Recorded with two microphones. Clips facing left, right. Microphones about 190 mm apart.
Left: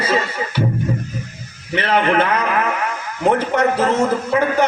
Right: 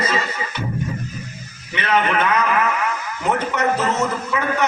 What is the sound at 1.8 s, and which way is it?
Speech, 30° left (ahead or behind).